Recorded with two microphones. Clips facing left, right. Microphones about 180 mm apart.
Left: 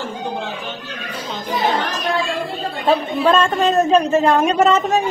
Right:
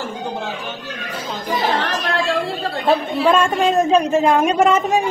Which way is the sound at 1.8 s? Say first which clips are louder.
Even; 85° right.